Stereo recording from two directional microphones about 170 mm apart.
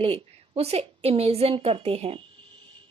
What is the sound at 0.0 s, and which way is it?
A woman's voice, 35° right (ahead or behind).